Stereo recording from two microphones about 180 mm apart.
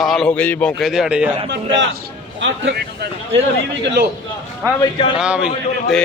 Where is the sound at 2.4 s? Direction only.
90° right.